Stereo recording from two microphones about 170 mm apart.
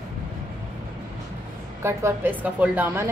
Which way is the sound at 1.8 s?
15° right (ahead or behind).